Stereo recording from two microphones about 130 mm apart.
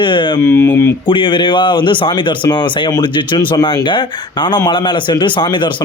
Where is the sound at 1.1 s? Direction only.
40° left (ahead or behind).